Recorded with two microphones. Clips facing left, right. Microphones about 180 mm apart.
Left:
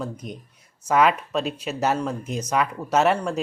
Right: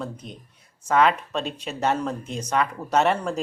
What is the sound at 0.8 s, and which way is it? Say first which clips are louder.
Speech: left 1 dB; 10° left (ahead or behind).